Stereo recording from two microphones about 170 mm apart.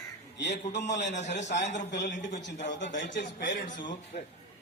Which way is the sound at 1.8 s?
90° left.